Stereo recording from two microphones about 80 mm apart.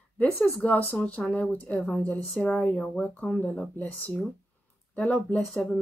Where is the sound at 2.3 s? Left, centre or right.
Centre.